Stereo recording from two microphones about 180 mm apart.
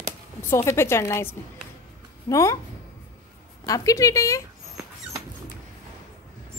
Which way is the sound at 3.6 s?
20° left (ahead or behind).